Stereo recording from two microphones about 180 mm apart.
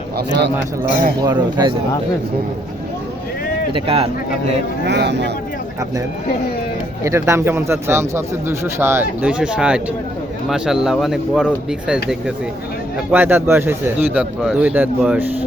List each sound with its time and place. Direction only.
0.2 s speech: 70° right (ahead or behind)
1.2 s speech: 20° right (ahead or behind)
3.7 s speech: 30° right (ahead or behind)
4.9 s speech: 70° right (ahead or behind)
7.0 s speech: 15° right (ahead or behind)
13.1 s speech: 10° right (ahead or behind)